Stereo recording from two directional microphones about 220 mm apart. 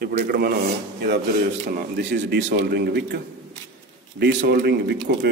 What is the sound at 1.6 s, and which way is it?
Speech, 45° right (ahead or behind).